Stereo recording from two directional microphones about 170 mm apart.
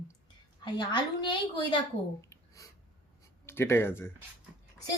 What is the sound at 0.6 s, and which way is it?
A woman's voice, 25° left (ahead or behind).